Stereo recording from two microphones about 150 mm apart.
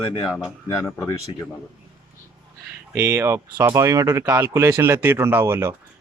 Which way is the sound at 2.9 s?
15° right (ahead or behind).